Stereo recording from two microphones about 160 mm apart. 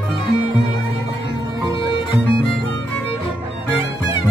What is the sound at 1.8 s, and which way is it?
Music, 30° left (ahead or behind).